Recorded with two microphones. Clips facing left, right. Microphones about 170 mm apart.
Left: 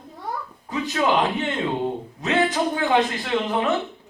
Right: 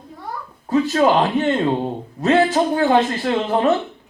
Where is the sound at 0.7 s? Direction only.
45° right (ahead or behind).